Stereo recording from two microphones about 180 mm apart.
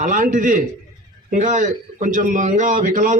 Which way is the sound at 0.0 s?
45° right (ahead or behind).